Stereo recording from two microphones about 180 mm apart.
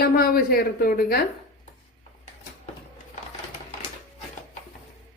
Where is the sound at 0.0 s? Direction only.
55° left (ahead or behind).